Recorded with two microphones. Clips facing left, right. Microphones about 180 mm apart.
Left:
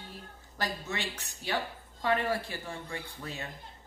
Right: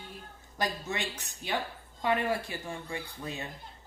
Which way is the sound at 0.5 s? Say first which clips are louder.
Right 2 dB; 15° right (ahead or behind).